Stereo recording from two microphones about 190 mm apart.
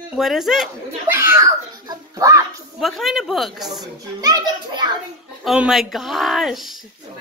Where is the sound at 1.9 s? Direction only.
15° right (ahead or behind).